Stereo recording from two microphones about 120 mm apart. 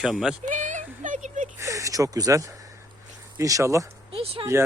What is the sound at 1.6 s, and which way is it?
Speech, 25° right (ahead or behind).